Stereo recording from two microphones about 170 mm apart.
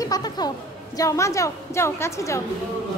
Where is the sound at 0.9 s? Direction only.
20° left (ahead or behind).